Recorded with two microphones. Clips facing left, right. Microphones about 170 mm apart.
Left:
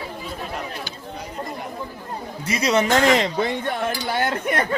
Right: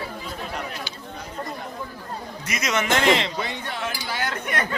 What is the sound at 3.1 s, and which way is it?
Speech, 45° left (ahead or behind).